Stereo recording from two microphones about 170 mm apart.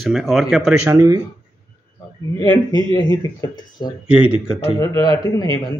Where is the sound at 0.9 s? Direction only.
20° right (ahead or behind).